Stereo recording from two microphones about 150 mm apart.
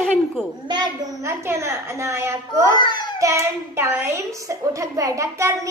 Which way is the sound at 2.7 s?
30° left (ahead or behind).